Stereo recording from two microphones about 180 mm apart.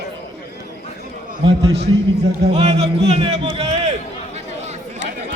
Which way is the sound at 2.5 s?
35° right (ahead or behind).